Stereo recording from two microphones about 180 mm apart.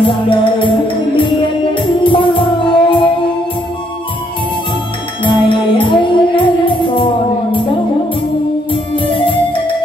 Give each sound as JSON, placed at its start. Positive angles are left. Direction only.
{"t": 0.0, "sound": "music", "side_deg": 25}
{"t": 5.2, "sound": "music", "side_deg": 30}
{"t": 8.9, "sound": "music", "side_deg": 30}